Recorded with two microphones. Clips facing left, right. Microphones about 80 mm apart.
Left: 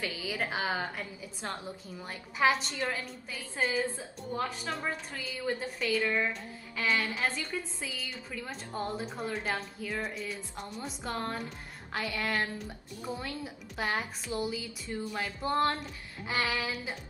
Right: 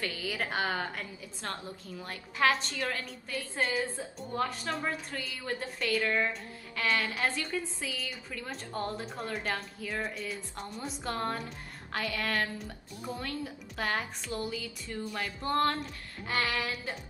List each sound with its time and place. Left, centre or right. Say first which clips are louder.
0.0 s a woman's voice: even; centre
15.8 s a sound: right 1 dB; centre
16.5 s a woman's voice: even; centre